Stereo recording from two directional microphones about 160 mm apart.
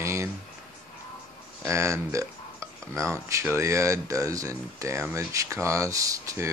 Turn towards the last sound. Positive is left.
turn(degrees=-20)  # may be behind; listen again after turning